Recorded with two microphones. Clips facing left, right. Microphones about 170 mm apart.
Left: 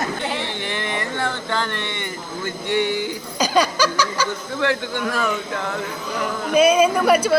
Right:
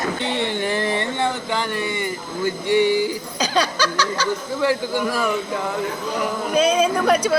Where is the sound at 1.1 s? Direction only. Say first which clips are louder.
Right 1 dB; 20° right (ahead or behind).